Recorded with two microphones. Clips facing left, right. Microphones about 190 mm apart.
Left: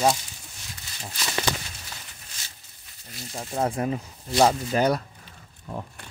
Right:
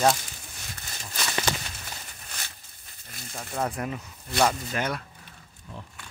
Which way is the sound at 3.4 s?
30° left (ahead or behind).